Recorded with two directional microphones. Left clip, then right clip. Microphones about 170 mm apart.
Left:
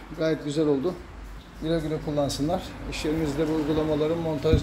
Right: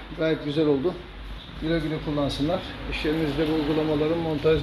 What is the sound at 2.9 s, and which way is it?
Speech, 15° left (ahead or behind).